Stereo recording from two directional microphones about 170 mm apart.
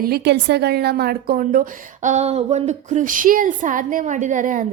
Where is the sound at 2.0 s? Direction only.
40° right (ahead or behind).